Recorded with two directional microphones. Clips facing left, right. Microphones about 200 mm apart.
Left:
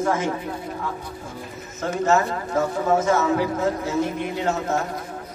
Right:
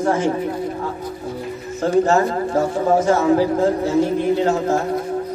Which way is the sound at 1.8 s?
35° right (ahead or behind).